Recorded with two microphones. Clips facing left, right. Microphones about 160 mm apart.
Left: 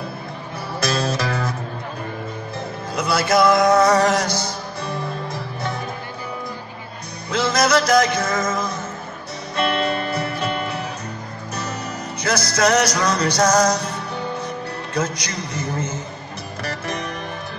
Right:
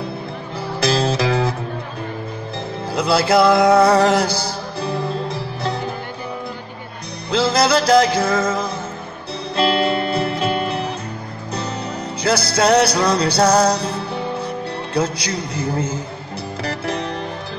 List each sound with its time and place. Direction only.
0.8 s music: 30° right (ahead or behind)
2.9 s music: 30° right (ahead or behind)
7.2 s music: 30° right (ahead or behind)
12.2 s music: 30° right (ahead or behind)
15.0 s a man's voice: 30° right (ahead or behind)
16.6 s music: 30° right (ahead or behind)